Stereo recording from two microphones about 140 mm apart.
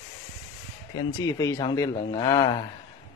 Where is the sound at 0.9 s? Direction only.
25° left (ahead or behind).